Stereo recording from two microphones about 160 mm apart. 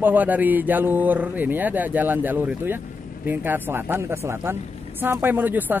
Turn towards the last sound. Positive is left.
turn(degrees=-10)  # may be behind; listen again after turning